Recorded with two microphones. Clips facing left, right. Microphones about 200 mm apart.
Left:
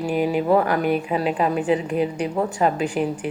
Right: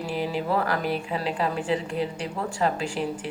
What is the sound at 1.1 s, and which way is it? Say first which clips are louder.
A woman's voice: left 6 dB; 15° left (ahead or behind).